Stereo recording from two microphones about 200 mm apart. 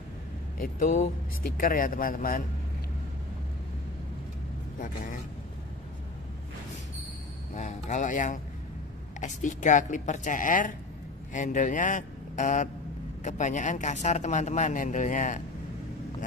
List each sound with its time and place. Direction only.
0.6 s speech: 40° left (ahead or behind)
4.7 s a man's voice: 40° left (ahead or behind)
7.5 s a man's voice: 35° left (ahead or behind)